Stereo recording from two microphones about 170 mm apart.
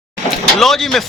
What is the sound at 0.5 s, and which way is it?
Speech, centre (ahead or behind).